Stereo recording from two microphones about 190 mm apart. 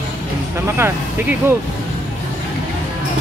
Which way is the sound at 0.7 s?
10° right (ahead or behind).